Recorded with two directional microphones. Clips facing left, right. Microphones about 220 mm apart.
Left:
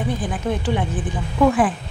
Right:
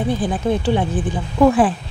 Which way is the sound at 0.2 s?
30° right (ahead or behind).